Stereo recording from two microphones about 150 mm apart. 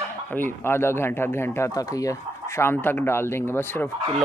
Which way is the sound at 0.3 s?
15° left (ahead or behind).